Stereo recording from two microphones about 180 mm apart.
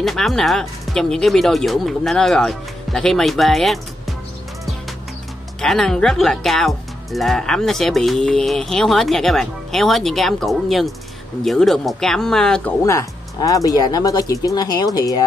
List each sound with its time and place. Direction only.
0.0 s speech: centre (ahead or behind)
5.6 s speech: centre (ahead or behind)
12.8 s speech: 20° left (ahead or behind)